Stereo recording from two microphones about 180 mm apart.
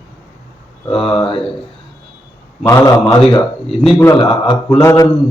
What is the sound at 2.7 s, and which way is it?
Speech, 15° left (ahead or behind).